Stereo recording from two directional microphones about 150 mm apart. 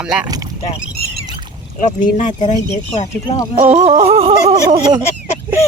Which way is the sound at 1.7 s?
55° left (ahead or behind).